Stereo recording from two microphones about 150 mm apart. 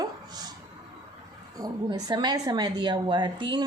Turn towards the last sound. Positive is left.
turn(degrees=-30)  # may be behind; listen again after turning